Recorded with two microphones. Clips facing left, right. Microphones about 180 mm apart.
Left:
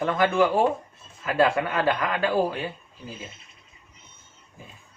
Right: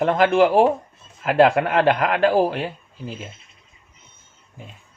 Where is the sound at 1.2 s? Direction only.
65° right (ahead or behind); by 2.7 s 85° right.